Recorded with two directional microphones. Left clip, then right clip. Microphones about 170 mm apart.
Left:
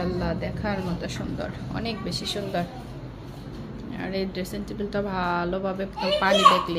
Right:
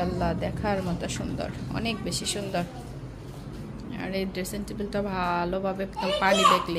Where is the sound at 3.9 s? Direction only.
5° right (ahead or behind).